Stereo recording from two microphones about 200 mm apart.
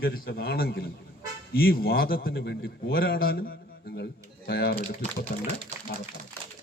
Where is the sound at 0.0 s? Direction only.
50° left (ahead or behind).